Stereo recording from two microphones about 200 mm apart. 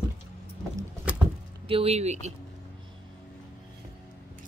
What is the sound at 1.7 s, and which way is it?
Speech, 30° right (ahead or behind).